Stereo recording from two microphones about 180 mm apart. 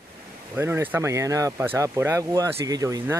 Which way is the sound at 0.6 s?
15° right (ahead or behind).